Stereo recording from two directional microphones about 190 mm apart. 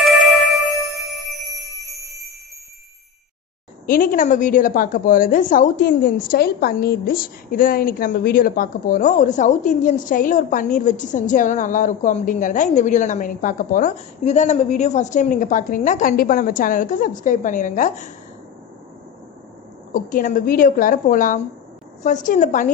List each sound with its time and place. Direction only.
3.8 s a woman's voice: 45° left (ahead or behind)
19.9 s a woman's voice: 45° left (ahead or behind)